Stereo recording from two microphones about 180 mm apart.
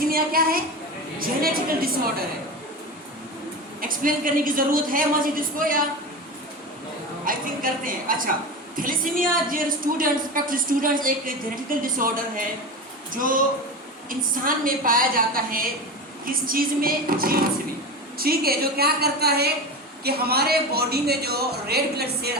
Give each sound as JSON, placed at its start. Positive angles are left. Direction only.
{"t": 0.0, "sound": "a woman's voice", "side_deg": -55}
{"t": 3.8, "sound": "a woman's voice", "side_deg": -50}
{"t": 7.3, "sound": "a woman's voice", "side_deg": -50}